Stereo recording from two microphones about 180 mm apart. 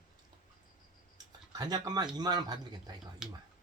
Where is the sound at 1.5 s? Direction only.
20° right (ahead or behind).